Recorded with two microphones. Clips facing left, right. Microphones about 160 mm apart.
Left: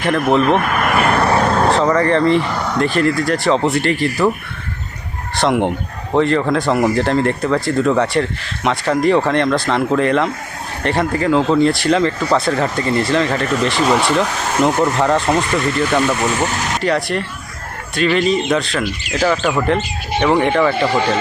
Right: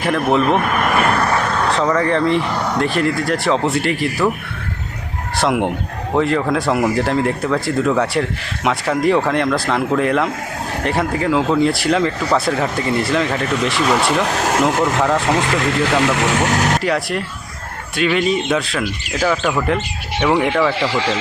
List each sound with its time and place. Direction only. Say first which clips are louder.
0.0 s speech: left 1 dB; centre (ahead or behind)
1.4 s vehicle: left 4 dB; 35° left (ahead or behind)
1.8 s speech: left 2 dB; centre (ahead or behind)
5.4 s speech: left 2 dB; centre (ahead or behind)
15.4 s speech: even; 90° right
16.8 s speech: left 2 dB; 5° right (ahead or behind)
20.7 s speech: left 3 dB; 90° right